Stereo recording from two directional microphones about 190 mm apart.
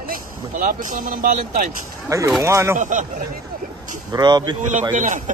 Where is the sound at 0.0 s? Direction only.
45° right (ahead or behind).